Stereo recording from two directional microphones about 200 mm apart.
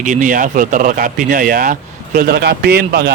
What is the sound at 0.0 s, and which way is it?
Speech, 40° right (ahead or behind).